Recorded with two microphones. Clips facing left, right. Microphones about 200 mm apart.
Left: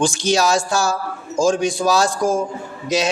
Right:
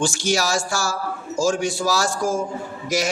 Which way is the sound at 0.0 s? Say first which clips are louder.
Left 4 dB; 20° left (ahead or behind).